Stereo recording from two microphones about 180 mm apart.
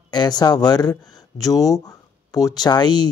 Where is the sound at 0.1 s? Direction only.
20° left (ahead or behind).